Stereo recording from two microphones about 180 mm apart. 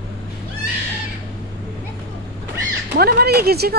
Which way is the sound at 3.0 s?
60° right (ahead or behind).